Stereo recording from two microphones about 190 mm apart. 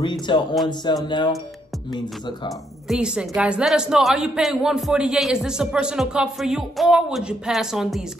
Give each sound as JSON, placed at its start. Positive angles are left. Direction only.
{"t": 0.0, "sound": "speech", "side_deg": 25}
{"t": 2.9, "sound": "a woman's voice", "side_deg": -5}